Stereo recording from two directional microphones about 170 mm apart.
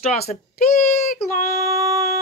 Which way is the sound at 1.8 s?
20° right (ahead or behind).